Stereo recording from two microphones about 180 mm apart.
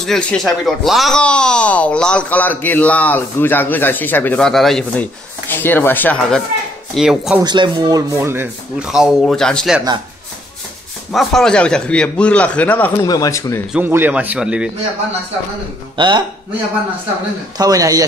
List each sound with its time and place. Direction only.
0.0 s speech: 5° left (ahead or behind)
7.0 s speech: centre (ahead or behind)
7.4 s speech: 25° right (ahead or behind); by 9.8 s 5° left (ahead or behind)
11.1 s speech: centre (ahead or behind)
13.0 s speech: 20° left (ahead or behind)
13.7 s speech: 10° right (ahead or behind)
16.0 s a man's voice: 25° right (ahead or behind)
17.6 s a man's voice: 20° right (ahead or behind)